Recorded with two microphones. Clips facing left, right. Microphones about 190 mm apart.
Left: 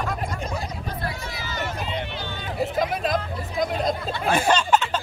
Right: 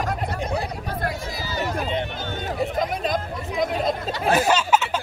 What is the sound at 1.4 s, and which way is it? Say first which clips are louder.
Music: right 4 dB; 35° right (ahead or behind).